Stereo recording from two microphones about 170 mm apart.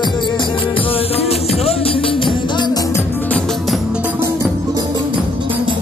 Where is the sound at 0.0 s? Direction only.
25° left (ahead or behind).